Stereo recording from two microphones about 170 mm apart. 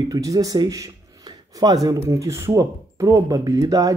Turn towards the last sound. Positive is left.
turn(degrees=-20)  # may be behind; listen again after turning